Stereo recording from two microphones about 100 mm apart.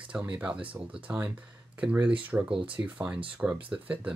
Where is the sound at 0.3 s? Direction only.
10° right (ahead or behind).